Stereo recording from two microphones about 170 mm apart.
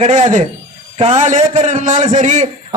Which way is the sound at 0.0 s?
45° right (ahead or behind).